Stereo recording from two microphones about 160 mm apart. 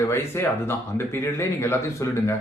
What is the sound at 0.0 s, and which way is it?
Speech, 15° left (ahead or behind).